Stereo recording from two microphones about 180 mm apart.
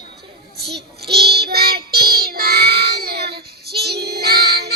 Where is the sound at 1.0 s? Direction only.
60° right (ahead or behind).